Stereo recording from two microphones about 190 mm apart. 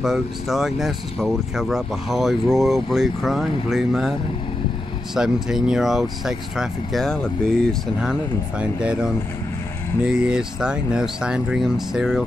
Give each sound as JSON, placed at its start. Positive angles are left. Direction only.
{"t": 0.0, "sound": "speech", "side_deg": 0}
{"t": 5.1, "sound": "speech", "side_deg": -5}